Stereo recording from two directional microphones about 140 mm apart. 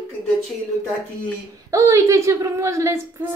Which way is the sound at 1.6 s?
20° right (ahead or behind).